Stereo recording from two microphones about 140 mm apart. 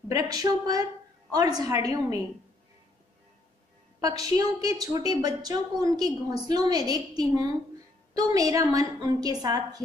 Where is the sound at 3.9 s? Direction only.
25° right (ahead or behind).